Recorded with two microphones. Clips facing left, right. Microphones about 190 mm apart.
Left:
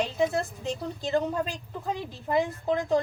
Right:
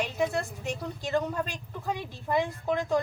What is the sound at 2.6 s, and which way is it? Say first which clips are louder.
Speech: left 2 dB; 20° left (ahead or behind).